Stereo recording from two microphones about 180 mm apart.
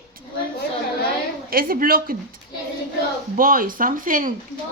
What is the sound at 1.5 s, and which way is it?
Speech, 55° right (ahead or behind).